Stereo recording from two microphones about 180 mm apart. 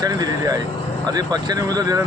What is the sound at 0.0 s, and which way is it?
Speech, 20° right (ahead or behind).